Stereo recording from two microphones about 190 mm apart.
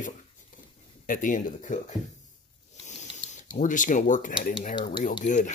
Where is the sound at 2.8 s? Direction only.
40° left (ahead or behind).